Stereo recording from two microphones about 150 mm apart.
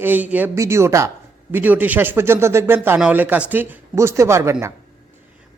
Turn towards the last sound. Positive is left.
turn(degrees=-20)  # may be behind; listen again after turning